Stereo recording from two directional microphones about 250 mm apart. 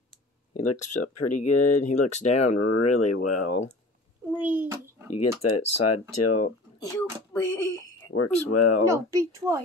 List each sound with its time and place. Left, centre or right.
0.6 s speech: left
1.0 s speech: left
1.9 s speech: left
2.5 s speech: left
3.4 s speech: left
4.4 s speech: centre
5.1 s speech: left
6.8 s speech: centre
8.1 s speech: left
8.8 s speech: centre